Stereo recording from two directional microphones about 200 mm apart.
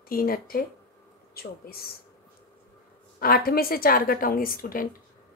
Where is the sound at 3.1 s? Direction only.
50° left (ahead or behind).